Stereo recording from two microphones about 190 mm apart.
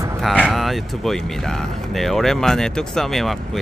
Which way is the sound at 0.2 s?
Centre (ahead or behind).